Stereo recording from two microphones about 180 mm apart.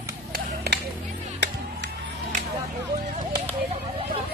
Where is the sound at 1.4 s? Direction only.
70° right (ahead or behind).